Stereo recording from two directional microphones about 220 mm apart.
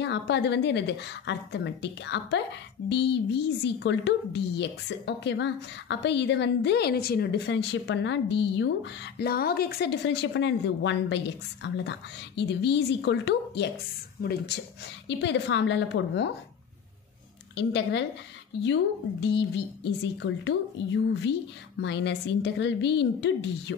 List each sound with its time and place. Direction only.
0.0 s speech: 50° left (ahead or behind)
17.6 s speech: 50° left (ahead or behind)